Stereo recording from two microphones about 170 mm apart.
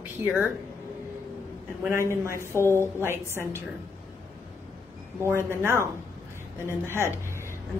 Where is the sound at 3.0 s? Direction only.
15° right (ahead or behind).